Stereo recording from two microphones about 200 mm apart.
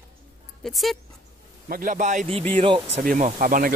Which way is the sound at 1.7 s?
45° right (ahead or behind).